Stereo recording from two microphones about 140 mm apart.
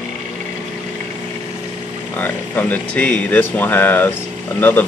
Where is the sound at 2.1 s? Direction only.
10° left (ahead or behind).